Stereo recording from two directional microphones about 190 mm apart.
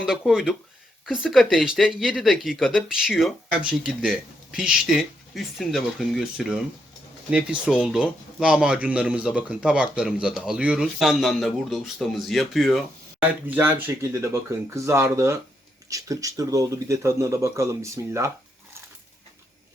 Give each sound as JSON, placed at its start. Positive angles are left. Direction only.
{"t": 0.0, "sound": "speech", "side_deg": -5}
{"t": 13.5, "sound": "speech", "side_deg": -10}